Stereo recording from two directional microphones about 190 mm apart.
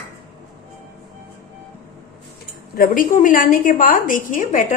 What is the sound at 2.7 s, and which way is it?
A woman's voice, 50° left (ahead or behind).